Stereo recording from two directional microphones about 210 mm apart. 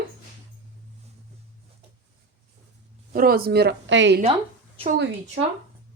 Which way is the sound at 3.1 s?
45° right (ahead or behind).